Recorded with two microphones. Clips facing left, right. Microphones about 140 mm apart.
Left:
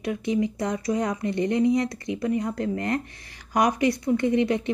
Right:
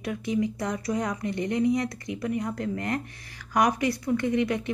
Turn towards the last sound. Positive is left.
turn(degrees=25)  # may be behind; listen again after turning